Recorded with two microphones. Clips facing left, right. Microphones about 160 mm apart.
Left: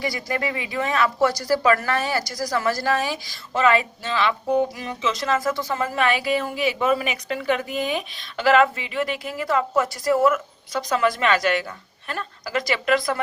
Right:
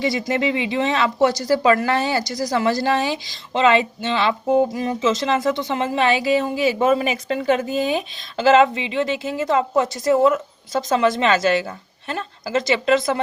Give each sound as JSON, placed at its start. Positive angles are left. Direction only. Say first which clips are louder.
{"t": 0.0, "sound": "speech", "louder": "right 5 dB", "side_deg": -25}